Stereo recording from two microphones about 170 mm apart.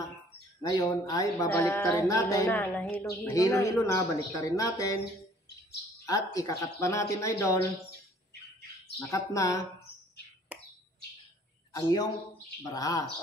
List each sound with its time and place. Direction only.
0.6 s a woman's voice: 25° left (ahead or behind)
6.0 s speech: 20° left (ahead or behind)
9.1 s speech: 20° left (ahead or behind)
10.5 s bird: 10° right (ahead or behind)
11.7 s speech: 25° left (ahead or behind)